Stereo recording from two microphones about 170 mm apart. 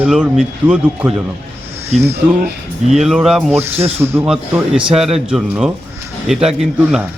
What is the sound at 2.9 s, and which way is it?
Speech, centre (ahead or behind).